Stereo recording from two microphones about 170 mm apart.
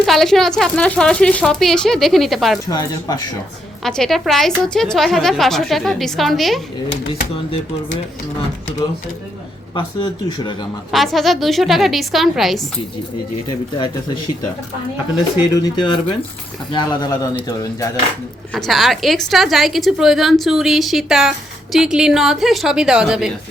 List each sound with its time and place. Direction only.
0.0 s a woman's voice: centre (ahead or behind)
2.6 s speech: 25° left (ahead or behind)
3.8 s a woman's voice: centre (ahead or behind)
9.7 s speech: 25° left (ahead or behind)
10.9 s a woman's voice: centre (ahead or behind)
13.5 s speech: 25° left (ahead or behind)
15.6 s speech: 25° left (ahead or behind)
18.5 s a woman's voice: centre (ahead or behind)